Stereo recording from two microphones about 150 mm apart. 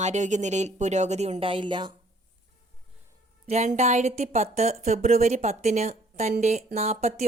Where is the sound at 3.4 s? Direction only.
50° right (ahead or behind).